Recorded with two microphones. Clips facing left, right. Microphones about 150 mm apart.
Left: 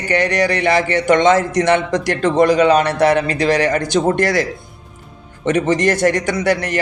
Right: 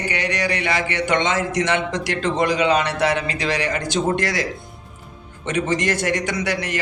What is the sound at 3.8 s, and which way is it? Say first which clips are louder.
Speech: left 5 dB; 60° left (ahead or behind).